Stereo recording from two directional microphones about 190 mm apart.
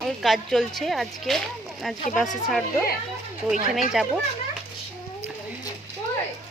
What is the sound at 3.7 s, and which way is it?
Speech, centre (ahead or behind).